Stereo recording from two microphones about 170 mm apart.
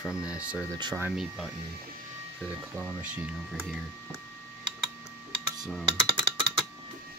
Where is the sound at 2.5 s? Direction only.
10° right (ahead or behind).